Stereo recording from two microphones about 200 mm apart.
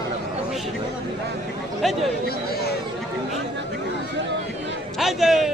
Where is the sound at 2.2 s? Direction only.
50° left (ahead or behind).